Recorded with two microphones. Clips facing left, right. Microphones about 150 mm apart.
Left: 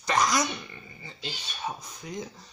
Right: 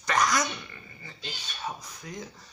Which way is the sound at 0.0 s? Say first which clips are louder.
Left 1 dB; 20° left (ahead or behind).